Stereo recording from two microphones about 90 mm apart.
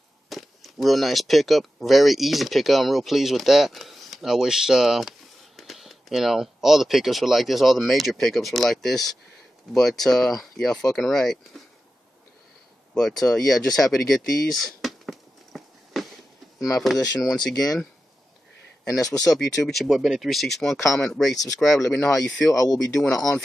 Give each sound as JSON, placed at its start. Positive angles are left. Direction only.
{"t": 0.3, "sound": "speech", "side_deg": 0}
{"t": 12.9, "sound": "speech", "side_deg": 5}
{"t": 14.5, "sound": "a sound", "side_deg": 0}
{"t": 17.2, "sound": "speech", "side_deg": 5}
{"t": 18.9, "sound": "speech", "side_deg": 40}
{"t": 19.3, "sound": "speech", "side_deg": 0}
{"t": 22.1, "sound": "speech", "side_deg": 40}
{"t": 22.9, "sound": "speech", "side_deg": 5}